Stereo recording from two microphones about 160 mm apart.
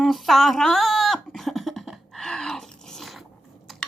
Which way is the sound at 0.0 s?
Centre (ahead or behind).